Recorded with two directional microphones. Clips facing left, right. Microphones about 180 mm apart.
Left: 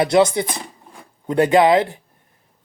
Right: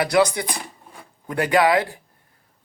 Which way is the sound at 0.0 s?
25° left (ahead or behind).